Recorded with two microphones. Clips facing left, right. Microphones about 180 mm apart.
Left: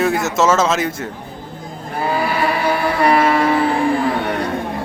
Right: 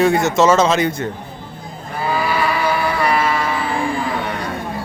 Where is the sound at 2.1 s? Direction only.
55° left (ahead or behind).